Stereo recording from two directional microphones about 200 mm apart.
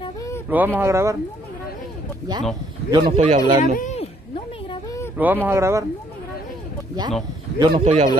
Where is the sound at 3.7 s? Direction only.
35° left (ahead or behind).